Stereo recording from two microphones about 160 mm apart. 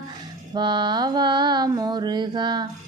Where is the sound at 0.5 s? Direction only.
30° right (ahead or behind).